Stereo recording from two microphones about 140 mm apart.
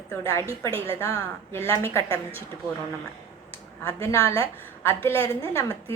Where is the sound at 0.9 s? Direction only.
20° left (ahead or behind).